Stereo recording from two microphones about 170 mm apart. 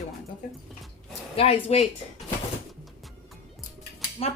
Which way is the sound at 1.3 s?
35° left (ahead or behind).